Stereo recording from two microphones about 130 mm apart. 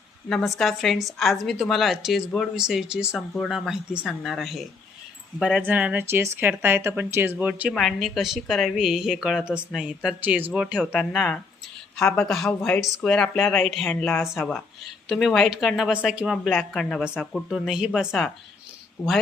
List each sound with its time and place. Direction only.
0.3 s a woman's voice: 5° left (ahead or behind)
5.6 s speech: 10° right (ahead or behind)
7.7 s a woman's voice: centre (ahead or behind)
10.8 s a woman's voice: centre (ahead or behind)
12.8 s a woman's voice: centre (ahead or behind)